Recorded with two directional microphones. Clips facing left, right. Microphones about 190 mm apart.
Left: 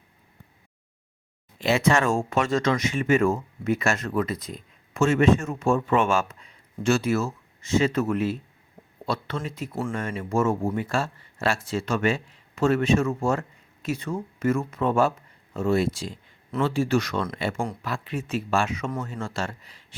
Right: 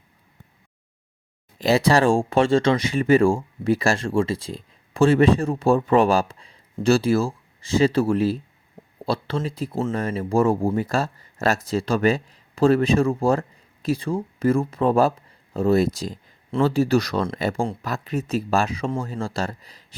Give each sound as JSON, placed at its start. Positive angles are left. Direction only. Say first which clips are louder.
{"t": 1.5, "sound": "speech", "louder": "right 4 dB", "side_deg": -35}